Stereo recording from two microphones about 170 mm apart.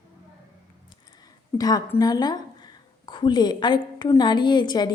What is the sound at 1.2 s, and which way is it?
A woman's voice, 20° left (ahead or behind).